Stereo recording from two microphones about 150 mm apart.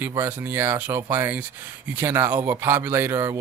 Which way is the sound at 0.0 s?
15° right (ahead or behind).